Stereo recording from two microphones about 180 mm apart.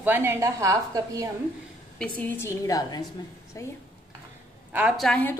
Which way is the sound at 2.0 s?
10° left (ahead or behind).